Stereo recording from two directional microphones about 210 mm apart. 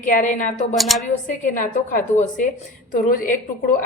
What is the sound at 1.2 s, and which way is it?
A woman's voice, 40° left (ahead or behind).